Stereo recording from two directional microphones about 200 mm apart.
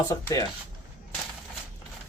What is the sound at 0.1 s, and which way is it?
Speech, 15° left (ahead or behind).